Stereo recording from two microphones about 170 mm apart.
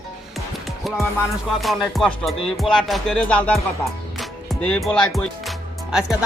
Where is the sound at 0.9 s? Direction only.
Centre (ahead or behind).